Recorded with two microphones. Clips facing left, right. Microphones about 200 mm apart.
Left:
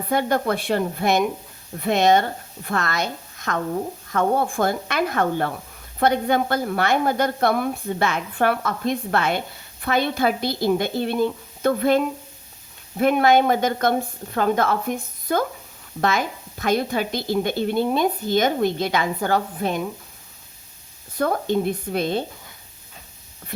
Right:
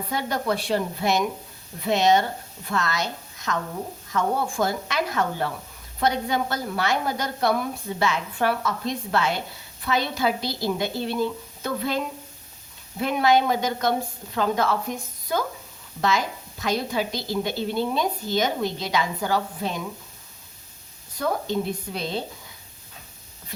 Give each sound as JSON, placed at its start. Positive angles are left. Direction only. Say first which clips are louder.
{"t": 0.1, "sound": "speech", "louder": "left 5 dB", "side_deg": 55}
{"t": 21.2, "sound": "speech", "louder": "left 4 dB", "side_deg": 55}